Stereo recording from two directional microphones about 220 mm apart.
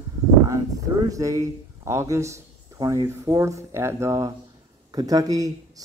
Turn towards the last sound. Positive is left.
turn(degrees=-15)  # may be behind; listen again after turning